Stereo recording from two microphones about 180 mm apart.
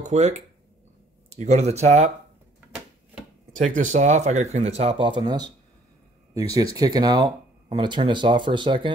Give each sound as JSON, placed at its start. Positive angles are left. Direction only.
{"t": 0.0, "sound": "speech", "side_deg": -40}
{"t": 3.5, "sound": "speech", "side_deg": -45}